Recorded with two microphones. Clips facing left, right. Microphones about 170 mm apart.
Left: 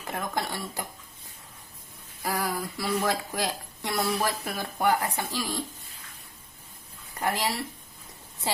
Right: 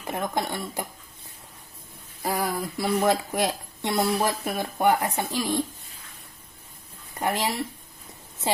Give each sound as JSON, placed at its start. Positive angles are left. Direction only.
{"t": 0.1, "sound": "a woman's voice", "side_deg": -20}
{"t": 2.2, "sound": "a woman's voice", "side_deg": -25}
{"t": 7.1, "sound": "speech", "side_deg": -20}